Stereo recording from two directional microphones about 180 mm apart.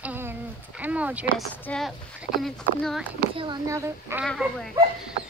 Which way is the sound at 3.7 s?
15° right (ahead or behind).